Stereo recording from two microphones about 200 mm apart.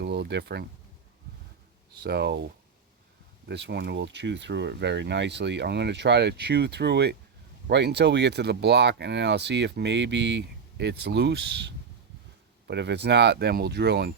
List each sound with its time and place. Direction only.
0.0 s a sound: 60° right (ahead or behind)
2.0 s speech: 55° right (ahead or behind)
12.6 s speech: 60° right (ahead or behind)